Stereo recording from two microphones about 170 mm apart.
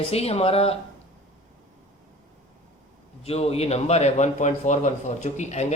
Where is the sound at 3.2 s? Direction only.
35° left (ahead or behind).